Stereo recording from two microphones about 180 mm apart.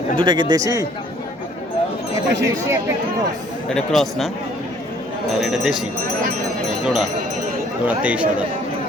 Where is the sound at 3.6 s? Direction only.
Centre (ahead or behind).